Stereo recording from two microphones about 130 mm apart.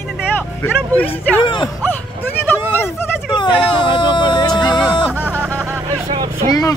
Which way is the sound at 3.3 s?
35° left (ahead or behind).